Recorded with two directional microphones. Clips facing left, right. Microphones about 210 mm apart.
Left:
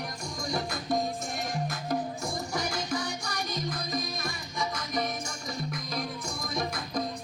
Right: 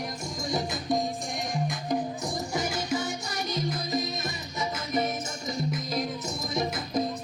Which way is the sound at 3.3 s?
25° right (ahead or behind).